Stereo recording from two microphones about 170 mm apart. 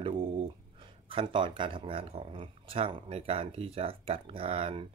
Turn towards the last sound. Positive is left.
turn(degrees=-35)  # may be behind; listen again after turning